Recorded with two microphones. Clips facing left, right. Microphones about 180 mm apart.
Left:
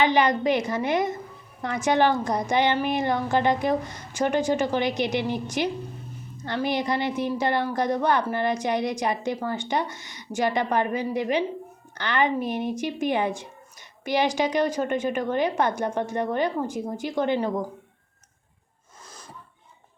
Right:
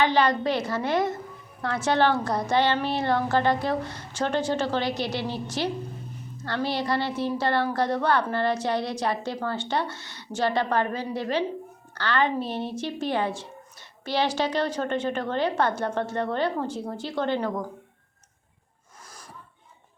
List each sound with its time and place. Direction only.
0.0 s a woman's voice: 15° left (ahead or behind)